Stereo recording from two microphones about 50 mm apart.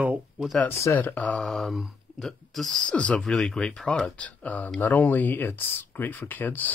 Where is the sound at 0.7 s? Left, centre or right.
Left.